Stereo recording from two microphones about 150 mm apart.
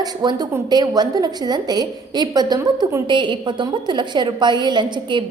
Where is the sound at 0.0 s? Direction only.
25° right (ahead or behind).